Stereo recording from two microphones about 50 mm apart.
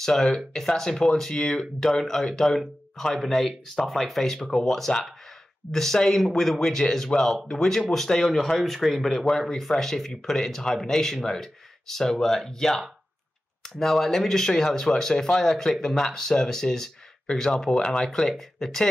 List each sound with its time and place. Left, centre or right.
0.0 s a man's voice: centre